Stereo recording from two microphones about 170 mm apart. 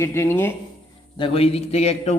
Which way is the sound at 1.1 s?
30° left (ahead or behind).